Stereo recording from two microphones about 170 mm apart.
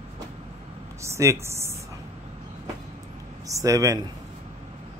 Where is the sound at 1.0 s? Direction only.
15° right (ahead or behind).